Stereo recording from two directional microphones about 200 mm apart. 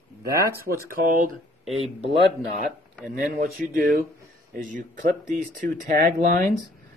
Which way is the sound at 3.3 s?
45° right (ahead or behind).